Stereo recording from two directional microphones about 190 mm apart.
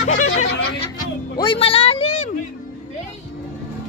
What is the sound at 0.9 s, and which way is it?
Music, 25° left (ahead or behind).